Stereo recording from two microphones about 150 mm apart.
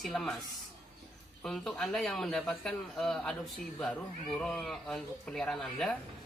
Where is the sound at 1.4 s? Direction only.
Centre (ahead or behind).